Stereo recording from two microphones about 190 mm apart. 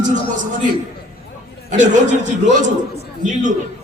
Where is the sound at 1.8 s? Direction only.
40° right (ahead or behind).